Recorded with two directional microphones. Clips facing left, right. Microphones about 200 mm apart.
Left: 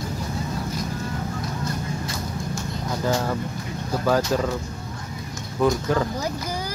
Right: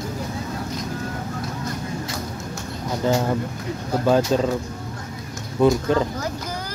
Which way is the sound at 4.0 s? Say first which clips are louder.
Right 3 dB; 20° right (ahead or behind).